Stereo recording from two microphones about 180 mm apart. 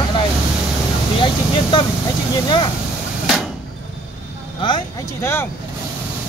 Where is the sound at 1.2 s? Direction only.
25° left (ahead or behind).